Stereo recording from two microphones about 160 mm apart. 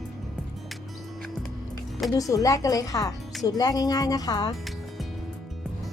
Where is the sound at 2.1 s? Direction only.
20° left (ahead or behind).